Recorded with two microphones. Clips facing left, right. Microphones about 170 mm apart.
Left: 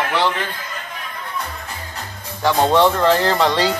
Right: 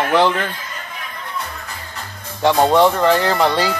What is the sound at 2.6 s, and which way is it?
Speech, 5° right (ahead or behind).